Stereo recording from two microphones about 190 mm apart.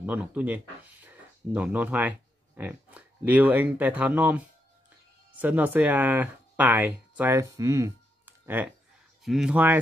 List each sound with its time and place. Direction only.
0.0 s speech: 10° right (ahead or behind)
5.4 s speech: 10° right (ahead or behind)